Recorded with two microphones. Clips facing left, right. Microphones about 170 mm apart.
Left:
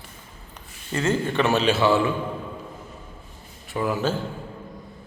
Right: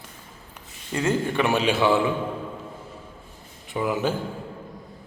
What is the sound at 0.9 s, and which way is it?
A man's voice, 10° right (ahead or behind).